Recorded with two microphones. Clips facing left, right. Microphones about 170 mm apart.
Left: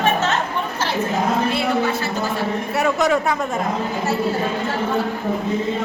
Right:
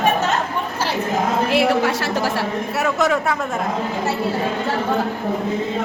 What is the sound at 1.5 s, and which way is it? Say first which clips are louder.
Speech: right 3 dB; 80° right.